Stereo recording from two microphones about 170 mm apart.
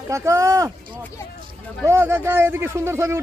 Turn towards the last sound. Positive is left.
turn(degrees=-15)  # may be behind; listen again after turning